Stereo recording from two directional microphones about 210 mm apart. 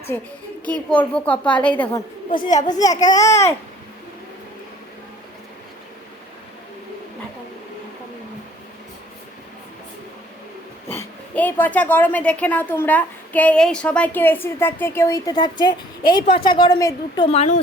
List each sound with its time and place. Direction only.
0.1 s speech: 10° left (ahead or behind)
2.5 s a child's voice: 35° left (ahead or behind)
2.7 s speech: 15° left (ahead or behind)
10.8 s speech: 10° left (ahead or behind); by 17.6 s 30° left (ahead or behind)